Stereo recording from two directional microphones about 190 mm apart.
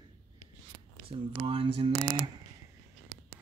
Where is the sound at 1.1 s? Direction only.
30° right (ahead or behind).